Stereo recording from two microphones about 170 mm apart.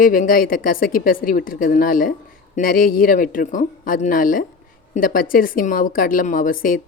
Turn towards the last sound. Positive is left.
turn(degrees=55)  # may be behind; listen again after turning